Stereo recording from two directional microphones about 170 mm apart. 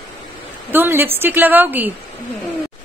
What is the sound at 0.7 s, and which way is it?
A woman's voice, 10° right (ahead or behind).